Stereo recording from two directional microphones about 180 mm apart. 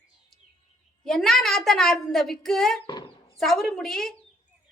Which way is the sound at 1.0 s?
Centre (ahead or behind).